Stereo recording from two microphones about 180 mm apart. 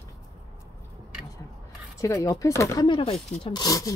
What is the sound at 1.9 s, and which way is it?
Speech, 15° left (ahead or behind).